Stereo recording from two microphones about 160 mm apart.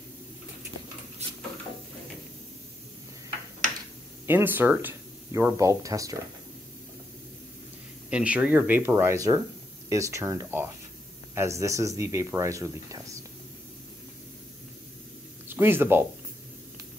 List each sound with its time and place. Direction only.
4.3 s speech: 15° right (ahead or behind)
8.1 s speech: 10° right (ahead or behind)
15.4 s speech: 15° right (ahead or behind)